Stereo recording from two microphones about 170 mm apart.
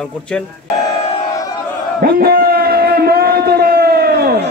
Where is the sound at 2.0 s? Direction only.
65° right (ahead or behind).